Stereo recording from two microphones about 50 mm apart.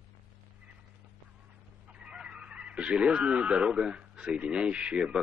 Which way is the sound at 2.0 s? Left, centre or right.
Centre.